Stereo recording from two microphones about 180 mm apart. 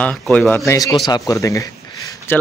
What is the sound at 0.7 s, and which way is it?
Speech, 15° left (ahead or behind).